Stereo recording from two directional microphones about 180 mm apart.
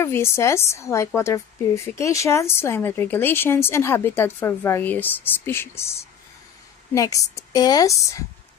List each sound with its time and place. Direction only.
0.0 s a woman's voice: 15° left (ahead or behind)
6.9 s a woman's voice: 20° left (ahead or behind)